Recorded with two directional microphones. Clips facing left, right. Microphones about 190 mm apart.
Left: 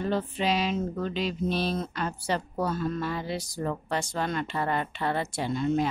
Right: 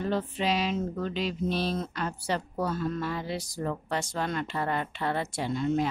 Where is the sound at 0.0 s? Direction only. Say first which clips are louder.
Left 1 dB; 25° left (ahead or behind).